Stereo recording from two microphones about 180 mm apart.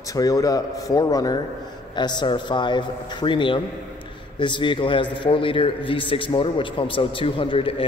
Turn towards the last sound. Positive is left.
turn(degrees=30)  # may be behind; listen again after turning